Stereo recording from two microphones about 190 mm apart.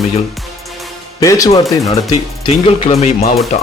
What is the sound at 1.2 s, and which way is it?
Speech, 20° left (ahead or behind).